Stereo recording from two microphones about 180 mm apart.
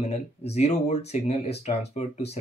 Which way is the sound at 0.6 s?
35° left (ahead or behind).